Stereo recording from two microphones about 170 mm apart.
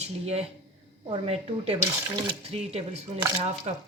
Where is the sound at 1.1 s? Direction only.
35° right (ahead or behind).